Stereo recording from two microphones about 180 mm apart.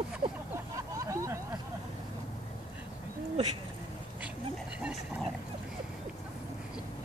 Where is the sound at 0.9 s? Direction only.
15° right (ahead or behind).